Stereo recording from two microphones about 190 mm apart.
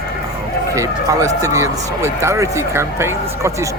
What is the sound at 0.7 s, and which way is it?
Speech, 15° right (ahead or behind).